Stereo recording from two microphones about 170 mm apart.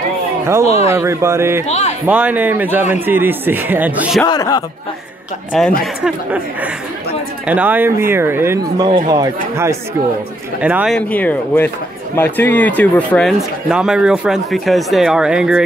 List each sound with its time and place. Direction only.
0.7 s speech: 40° left (ahead or behind)
0.9 s speech: 15° right (ahead or behind)
1.7 s a man's voice: 40° left (ahead or behind)
2.0 s speech: 10° right (ahead or behind)
4.3 s speech: 25° left (ahead or behind)
5.5 s speech: centre (ahead or behind)
6.0 s speech: 10° right (ahead or behind)
10.6 s speech: 5° right (ahead or behind)
11.0 s speech: 10° left (ahead or behind)